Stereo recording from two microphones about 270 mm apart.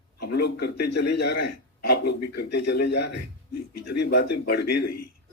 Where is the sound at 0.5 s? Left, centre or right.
Left.